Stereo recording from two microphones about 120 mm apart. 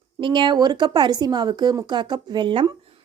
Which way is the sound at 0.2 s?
40° right (ahead or behind).